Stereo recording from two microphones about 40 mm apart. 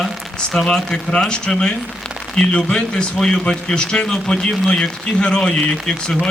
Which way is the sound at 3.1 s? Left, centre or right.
Centre.